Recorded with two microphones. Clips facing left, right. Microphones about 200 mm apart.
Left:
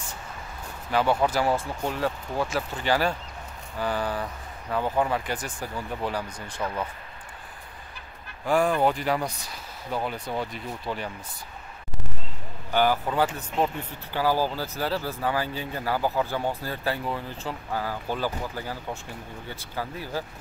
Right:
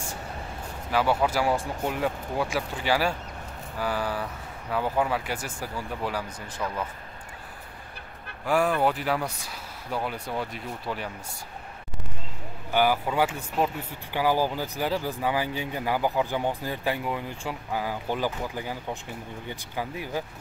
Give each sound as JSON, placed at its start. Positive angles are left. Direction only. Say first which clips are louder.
{"t": 0.9, "sound": "speech", "louder": "left 1 dB", "side_deg": -5}
{"t": 8.5, "sound": "speech", "louder": "left 1 dB", "side_deg": -5}
{"t": 12.7, "sound": "speech", "louder": "even", "side_deg": -10}